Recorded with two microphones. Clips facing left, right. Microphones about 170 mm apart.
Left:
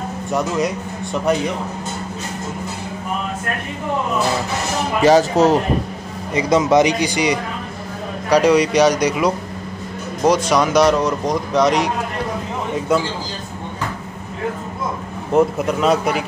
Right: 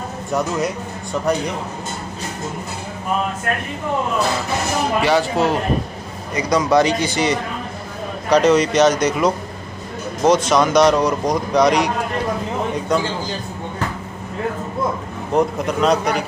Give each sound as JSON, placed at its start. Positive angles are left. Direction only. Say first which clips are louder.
{"t": 5.0, "sound": "speech", "louder": "left 7 dB", "side_deg": 40}
{"t": 6.3, "sound": "speech", "louder": "left 2 dB", "side_deg": 25}
{"t": 15.3, "sound": "speech", "louder": "left 2 dB", "side_deg": 5}